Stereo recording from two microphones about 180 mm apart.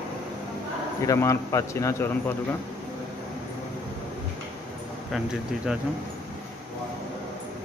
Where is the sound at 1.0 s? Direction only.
15° left (ahead or behind).